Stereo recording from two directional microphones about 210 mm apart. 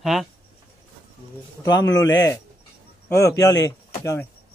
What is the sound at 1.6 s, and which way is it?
Speech, 20° left (ahead or behind).